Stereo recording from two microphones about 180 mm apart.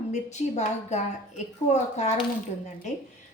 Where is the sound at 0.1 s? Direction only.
40° left (ahead or behind).